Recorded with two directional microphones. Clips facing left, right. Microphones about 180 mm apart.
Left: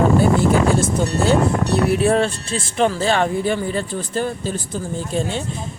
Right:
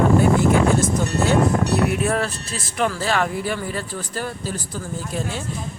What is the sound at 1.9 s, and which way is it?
Speech, 30° left (ahead or behind).